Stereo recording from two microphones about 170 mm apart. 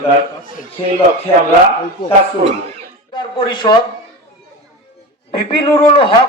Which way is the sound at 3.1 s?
30° left (ahead or behind).